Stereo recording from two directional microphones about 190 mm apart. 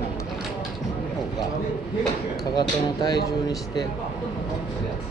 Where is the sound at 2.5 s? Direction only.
20° left (ahead or behind).